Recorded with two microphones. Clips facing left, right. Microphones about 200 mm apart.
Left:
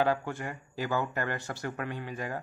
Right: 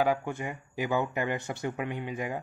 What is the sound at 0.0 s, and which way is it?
Speech, 15° right (ahead or behind).